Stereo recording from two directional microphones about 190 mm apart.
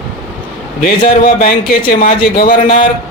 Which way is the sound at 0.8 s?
45° left (ahead or behind).